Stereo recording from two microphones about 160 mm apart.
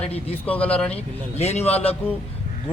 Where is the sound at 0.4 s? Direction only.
10° left (ahead or behind).